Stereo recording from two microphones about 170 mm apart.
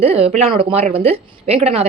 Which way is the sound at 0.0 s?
35° right (ahead or behind).